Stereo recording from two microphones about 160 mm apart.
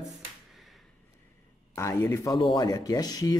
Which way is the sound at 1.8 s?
20° left (ahead or behind).